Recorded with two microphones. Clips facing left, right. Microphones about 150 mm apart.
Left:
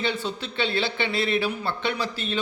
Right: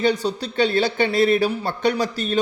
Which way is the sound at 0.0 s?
40° right (ahead or behind).